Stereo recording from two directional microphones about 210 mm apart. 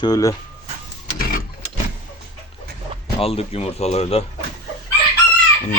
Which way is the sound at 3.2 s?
30° left (ahead or behind).